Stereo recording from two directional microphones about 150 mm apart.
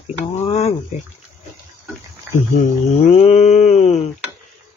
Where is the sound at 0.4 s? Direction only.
45° left (ahead or behind).